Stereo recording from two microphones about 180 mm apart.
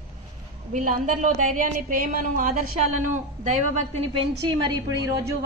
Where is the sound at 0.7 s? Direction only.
45° right (ahead or behind).